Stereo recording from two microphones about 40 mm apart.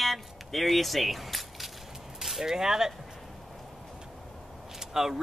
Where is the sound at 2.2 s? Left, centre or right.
Centre.